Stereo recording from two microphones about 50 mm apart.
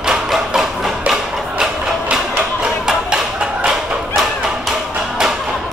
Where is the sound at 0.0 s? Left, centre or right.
Centre.